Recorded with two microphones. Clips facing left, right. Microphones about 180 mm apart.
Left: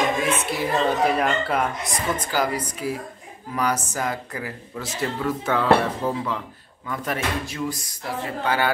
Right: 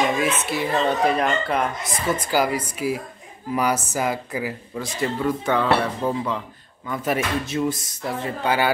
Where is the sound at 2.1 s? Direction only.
10° right (ahead or behind).